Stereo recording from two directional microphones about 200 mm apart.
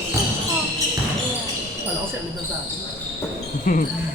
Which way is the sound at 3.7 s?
40° left (ahead or behind).